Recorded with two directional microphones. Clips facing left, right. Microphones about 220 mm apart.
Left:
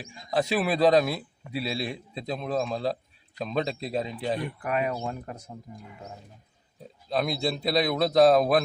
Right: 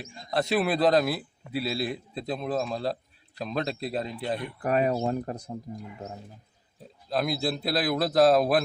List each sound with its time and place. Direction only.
0.0 s a man's voice: centre (ahead or behind)
4.6 s speech: 35° right (ahead or behind)
7.1 s a man's voice: centre (ahead or behind)